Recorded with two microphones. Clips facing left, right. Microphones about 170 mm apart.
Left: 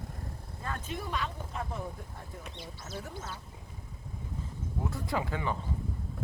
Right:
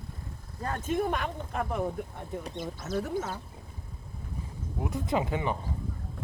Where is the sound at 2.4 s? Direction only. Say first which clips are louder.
Right 8 dB; 50° right (ahead or behind).